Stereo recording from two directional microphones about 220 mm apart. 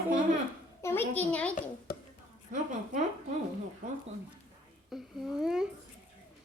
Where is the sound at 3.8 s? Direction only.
35° right (ahead or behind).